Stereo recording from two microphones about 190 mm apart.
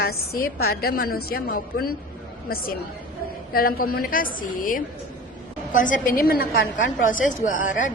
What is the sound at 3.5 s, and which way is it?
A woman's voice, 50° left (ahead or behind).